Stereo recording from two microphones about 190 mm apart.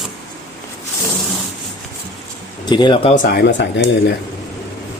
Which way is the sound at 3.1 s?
45° left (ahead or behind).